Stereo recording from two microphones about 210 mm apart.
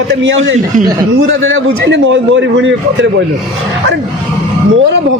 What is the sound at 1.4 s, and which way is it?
A man's voice, 60° right (ahead or behind).